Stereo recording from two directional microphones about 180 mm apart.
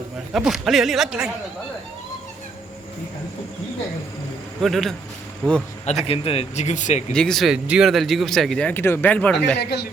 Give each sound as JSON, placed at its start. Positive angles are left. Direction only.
{"t": 0.3, "sound": "speech", "side_deg": 0}
{"t": 4.6, "sound": "speech", "side_deg": 0}
{"t": 6.1, "sound": "speech", "side_deg": 30}
{"t": 7.1, "sound": "speech", "side_deg": 5}
{"t": 9.6, "sound": "speech", "side_deg": 65}